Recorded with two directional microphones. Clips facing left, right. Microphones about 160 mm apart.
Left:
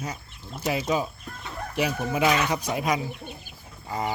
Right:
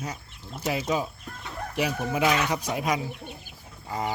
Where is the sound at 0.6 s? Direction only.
5° left (ahead or behind).